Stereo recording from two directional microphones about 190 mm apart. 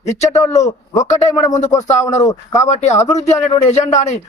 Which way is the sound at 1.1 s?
40° left (ahead or behind).